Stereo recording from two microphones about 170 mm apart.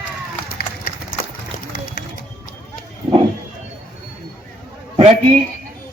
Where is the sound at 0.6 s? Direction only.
65° left (ahead or behind).